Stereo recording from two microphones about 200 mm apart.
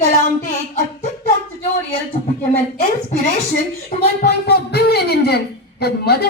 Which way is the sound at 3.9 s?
40° left (ahead or behind).